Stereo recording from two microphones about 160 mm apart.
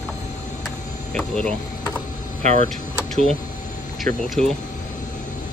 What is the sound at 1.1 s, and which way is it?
Speech, 5° left (ahead or behind).